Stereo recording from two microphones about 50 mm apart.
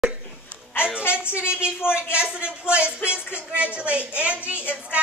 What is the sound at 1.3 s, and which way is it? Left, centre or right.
Speech, right.